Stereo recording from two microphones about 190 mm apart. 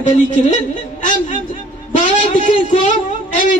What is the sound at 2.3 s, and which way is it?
Speech, 40° left (ahead or behind).